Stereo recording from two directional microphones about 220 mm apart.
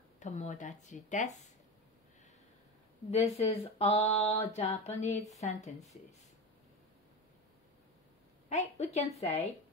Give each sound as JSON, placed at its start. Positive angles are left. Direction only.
{"t": 0.2, "sound": "speech", "side_deg": 35}
{"t": 3.1, "sound": "speech", "side_deg": 30}
{"t": 8.5, "sound": "speech", "side_deg": 30}